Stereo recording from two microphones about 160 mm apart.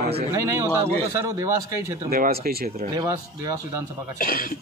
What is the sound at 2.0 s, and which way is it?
Speech, 65° right (ahead or behind).